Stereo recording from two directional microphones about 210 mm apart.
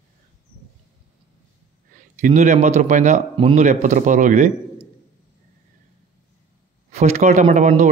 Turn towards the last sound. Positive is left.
turn(degrees=-35)  # may be behind; listen again after turning